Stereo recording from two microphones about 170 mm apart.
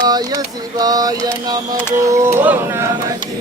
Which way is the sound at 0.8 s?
20° right (ahead or behind).